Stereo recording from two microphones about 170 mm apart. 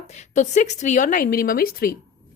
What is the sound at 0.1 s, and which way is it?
A woman's voice, 40° left (ahead or behind).